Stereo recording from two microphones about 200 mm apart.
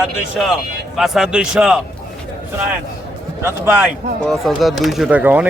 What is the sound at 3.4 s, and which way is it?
A man's voice, 10° right (ahead or behind).